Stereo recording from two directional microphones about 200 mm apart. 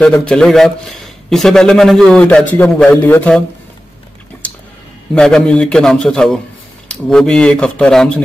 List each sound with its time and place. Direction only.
0.0 s a man's voice: 5° left (ahead or behind)
5.1 s a man's voice: 5° left (ahead or behind)